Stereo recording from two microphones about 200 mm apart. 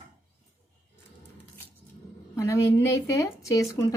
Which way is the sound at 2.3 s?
15° left (ahead or behind).